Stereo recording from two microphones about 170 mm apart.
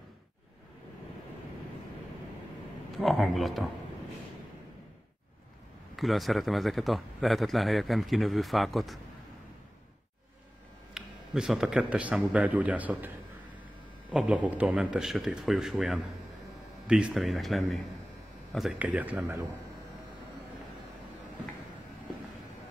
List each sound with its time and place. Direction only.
3.0 s a man's voice: centre (ahead or behind)
5.9 s a man's voice: centre (ahead or behind)
11.0 s speech: 5° right (ahead or behind)
14.1 s a man's voice: 10° right (ahead or behind)